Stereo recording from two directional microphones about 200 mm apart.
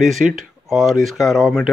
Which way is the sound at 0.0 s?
Centre (ahead or behind).